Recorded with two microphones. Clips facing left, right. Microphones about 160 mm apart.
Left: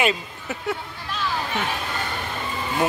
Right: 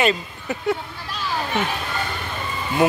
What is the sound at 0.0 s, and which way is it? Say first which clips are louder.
Speech: right 2 dB; 5° left (ahead or behind).